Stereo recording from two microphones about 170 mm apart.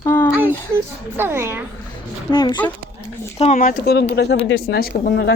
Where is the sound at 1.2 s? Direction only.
15° right (ahead or behind).